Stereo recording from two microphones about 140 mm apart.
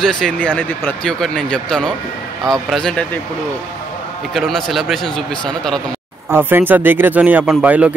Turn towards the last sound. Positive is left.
turn(degrees=-10)  # may be behind; listen again after turning